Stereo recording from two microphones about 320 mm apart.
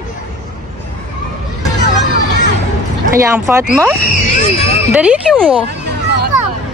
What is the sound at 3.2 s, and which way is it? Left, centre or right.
Speech, centre.